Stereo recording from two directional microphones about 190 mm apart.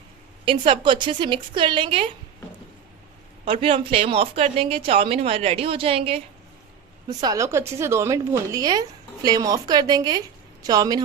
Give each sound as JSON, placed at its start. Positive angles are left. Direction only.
{"t": 0.4, "sound": "speech", "side_deg": -25}
{"t": 3.4, "sound": "a woman's voice", "side_deg": -30}
{"t": 7.2, "sound": "a woman's voice", "side_deg": -20}